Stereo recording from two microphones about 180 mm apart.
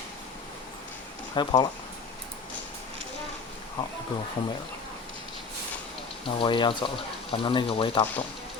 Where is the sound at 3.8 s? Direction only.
25° left (ahead or behind).